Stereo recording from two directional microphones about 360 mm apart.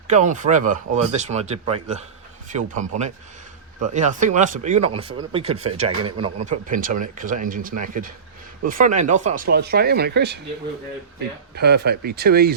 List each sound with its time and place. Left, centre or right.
0.1 s speech: right
11.5 s speech: right